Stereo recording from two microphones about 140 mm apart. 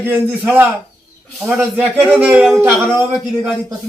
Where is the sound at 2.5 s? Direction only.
5° left (ahead or behind).